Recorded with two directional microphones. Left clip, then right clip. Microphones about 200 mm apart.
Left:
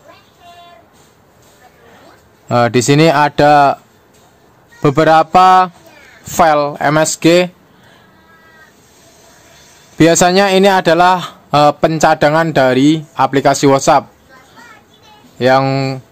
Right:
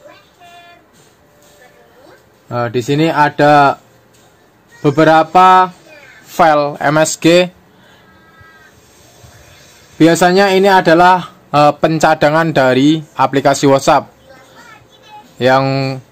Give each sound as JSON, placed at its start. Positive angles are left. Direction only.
{"t": 2.4, "sound": "a man's voice", "side_deg": 35}
{"t": 4.8, "sound": "a man's voice", "side_deg": 40}
{"t": 6.3, "sound": "speech", "side_deg": 20}
{"t": 9.9, "sound": "a man's voice", "side_deg": 35}
{"t": 11.5, "sound": "speech", "side_deg": 15}
{"t": 15.3, "sound": "speech", "side_deg": 5}